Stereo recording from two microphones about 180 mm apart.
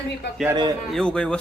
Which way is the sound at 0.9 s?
5° left (ahead or behind).